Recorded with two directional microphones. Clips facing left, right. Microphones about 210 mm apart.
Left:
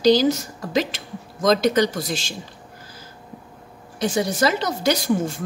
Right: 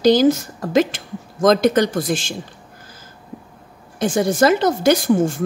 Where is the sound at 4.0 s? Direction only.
50° right (ahead or behind).